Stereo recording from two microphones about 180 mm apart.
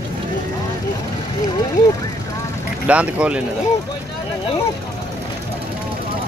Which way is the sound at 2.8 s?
5° right (ahead or behind).